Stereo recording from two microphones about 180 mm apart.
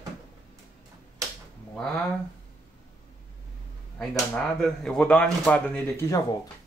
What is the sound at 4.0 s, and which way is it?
A man's voice, 5° left (ahead or behind).